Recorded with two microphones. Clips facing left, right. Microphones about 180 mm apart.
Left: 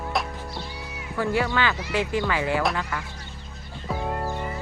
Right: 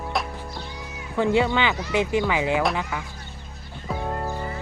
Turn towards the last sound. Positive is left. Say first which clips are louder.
# even
turn(degrees=10)  # may be behind; listen again after turning